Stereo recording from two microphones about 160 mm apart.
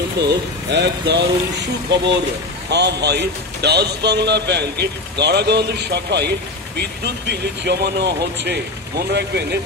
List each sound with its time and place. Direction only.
0.7 s speech: 90° right